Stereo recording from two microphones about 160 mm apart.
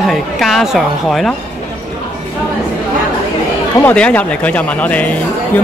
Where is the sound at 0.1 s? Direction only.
Centre (ahead or behind).